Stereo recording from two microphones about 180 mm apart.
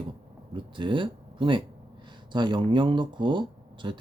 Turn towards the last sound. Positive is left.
turn(degrees=-25)  # may be behind; listen again after turning